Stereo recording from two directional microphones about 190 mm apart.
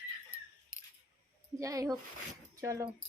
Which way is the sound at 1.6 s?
15° right (ahead or behind).